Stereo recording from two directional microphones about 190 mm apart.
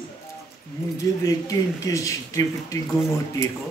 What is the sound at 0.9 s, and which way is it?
Speech, 20° left (ahead or behind).